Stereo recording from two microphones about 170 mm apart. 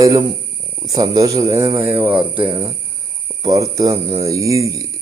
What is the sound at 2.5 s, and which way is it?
Speech, 20° right (ahead or behind).